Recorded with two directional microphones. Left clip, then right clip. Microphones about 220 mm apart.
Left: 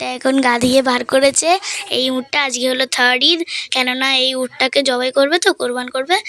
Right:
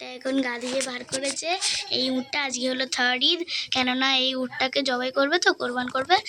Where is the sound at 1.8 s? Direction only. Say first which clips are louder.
Left 8 dB; 30° left (ahead or behind).